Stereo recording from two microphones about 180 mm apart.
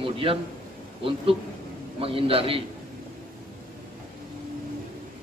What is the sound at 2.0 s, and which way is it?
Speech, 30° right (ahead or behind).